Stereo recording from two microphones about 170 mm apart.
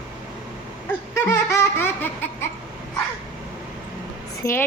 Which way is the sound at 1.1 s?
15° left (ahead or behind).